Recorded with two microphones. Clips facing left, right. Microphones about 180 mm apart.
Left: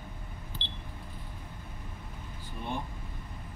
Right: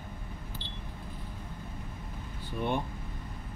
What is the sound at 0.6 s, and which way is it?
Camera, 25° left (ahead or behind).